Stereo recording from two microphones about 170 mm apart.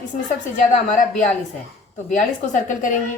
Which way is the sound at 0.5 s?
50° left (ahead or behind).